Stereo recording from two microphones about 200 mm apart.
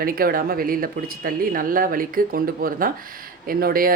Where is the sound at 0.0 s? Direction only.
45° right (ahead or behind).